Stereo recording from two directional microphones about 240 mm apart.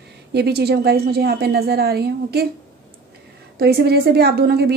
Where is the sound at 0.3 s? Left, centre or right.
Right.